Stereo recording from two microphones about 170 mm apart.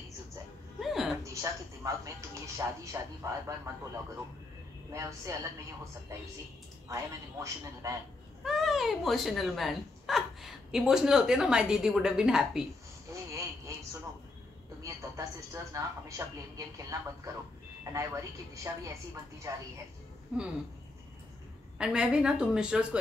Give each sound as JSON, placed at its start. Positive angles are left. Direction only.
{"t": 0.7, "sound": "a sound", "side_deg": 0}
{"t": 1.3, "sound": "speech", "side_deg": -20}
{"t": 4.9, "sound": "speech", "side_deg": -20}
{"t": 6.9, "sound": "speech", "side_deg": -20}
{"t": 8.5, "sound": "speech", "side_deg": 0}
{"t": 13.1, "sound": "a sound", "side_deg": -20}
{"t": 14.8, "sound": "speech", "side_deg": -15}
{"t": 20.3, "sound": "speech", "side_deg": -5}
{"t": 21.7, "sound": "speech", "side_deg": -5}